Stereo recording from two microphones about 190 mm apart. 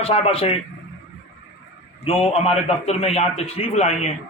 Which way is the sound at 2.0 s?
30° left (ahead or behind).